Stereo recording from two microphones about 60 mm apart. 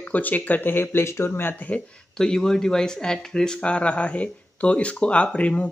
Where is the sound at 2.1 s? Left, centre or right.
Centre.